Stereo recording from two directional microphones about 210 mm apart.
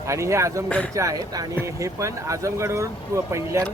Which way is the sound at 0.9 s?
15° right (ahead or behind).